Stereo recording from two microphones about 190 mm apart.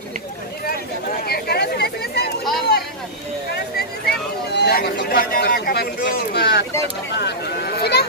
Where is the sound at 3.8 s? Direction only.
60° left (ahead or behind).